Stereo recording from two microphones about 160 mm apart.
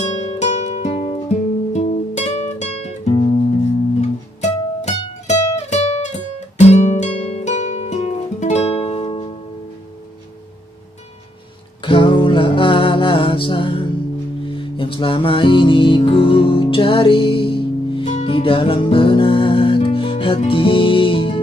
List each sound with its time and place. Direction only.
0.1 s music: 45° left (ahead or behind)
1.7 s guitar: 45° left (ahead or behind)
4.0 s music: 45° left (ahead or behind)
11.8 s music: 30° left (ahead or behind)